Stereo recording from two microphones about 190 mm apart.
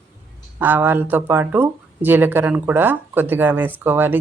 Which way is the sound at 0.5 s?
10° right (ahead or behind).